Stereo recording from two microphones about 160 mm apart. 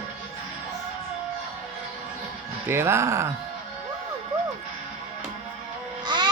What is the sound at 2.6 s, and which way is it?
Speech, 15° right (ahead or behind).